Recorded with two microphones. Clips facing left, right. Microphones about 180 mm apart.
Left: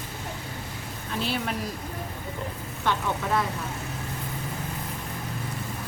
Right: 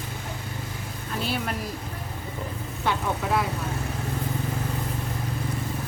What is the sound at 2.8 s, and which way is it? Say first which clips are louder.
Speech: right 1 dB; 10° right (ahead or behind).